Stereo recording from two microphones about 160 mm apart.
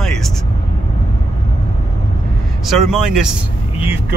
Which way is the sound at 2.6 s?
Centre (ahead or behind).